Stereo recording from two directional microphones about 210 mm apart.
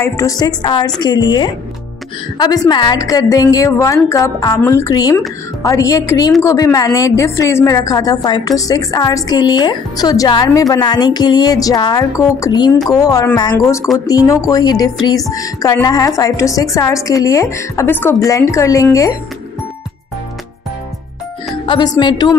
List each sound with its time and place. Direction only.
0.0 s a woman's voice: 15° left (ahead or behind)
21.6 s a woman's voice: 20° left (ahead or behind)